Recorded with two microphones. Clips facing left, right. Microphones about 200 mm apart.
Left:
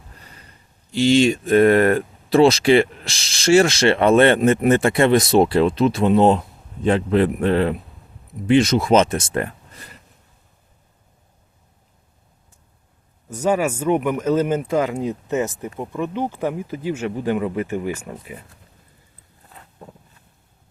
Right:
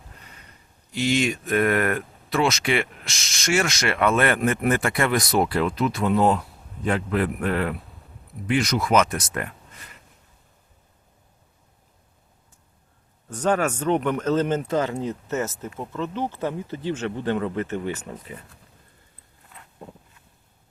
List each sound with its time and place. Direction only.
0.9 s speech: 30° left (ahead or behind)
13.3 s speech: 10° left (ahead or behind)
19.5 s a sound: 35° left (ahead or behind)